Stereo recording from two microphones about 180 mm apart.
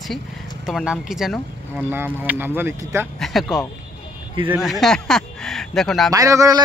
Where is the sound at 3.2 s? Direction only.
Centre (ahead or behind).